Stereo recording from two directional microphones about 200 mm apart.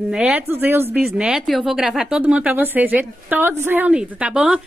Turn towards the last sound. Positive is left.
turn(degrees=-5)  # may be behind; listen again after turning